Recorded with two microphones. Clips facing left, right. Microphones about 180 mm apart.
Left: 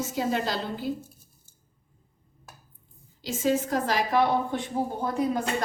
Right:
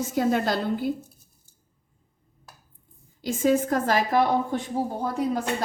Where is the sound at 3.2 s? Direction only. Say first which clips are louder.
Right 4 dB; 50° right (ahead or behind).